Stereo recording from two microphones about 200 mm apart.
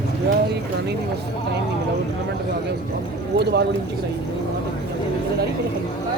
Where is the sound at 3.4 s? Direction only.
55° right (ahead or behind).